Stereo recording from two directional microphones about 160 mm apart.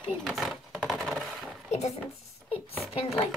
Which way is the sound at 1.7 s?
45° left (ahead or behind).